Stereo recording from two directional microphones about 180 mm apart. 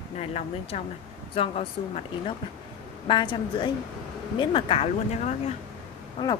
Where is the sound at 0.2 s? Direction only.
35° left (ahead or behind).